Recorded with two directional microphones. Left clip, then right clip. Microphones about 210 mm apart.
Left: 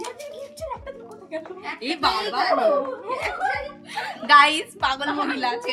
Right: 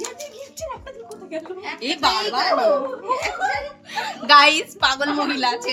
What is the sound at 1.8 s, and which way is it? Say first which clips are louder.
Speech: right 3 dB; 25° right (ahead or behind).